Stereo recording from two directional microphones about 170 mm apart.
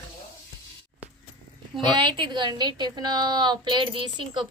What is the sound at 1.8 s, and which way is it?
A woman's voice, 30° right (ahead or behind).